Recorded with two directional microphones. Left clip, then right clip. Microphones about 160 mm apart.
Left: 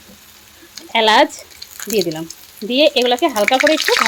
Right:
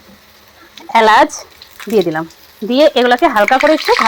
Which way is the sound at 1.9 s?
55° right (ahead or behind).